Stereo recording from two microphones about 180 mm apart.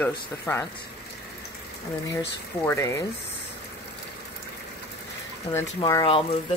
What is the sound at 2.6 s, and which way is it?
Speech, 15° left (ahead or behind).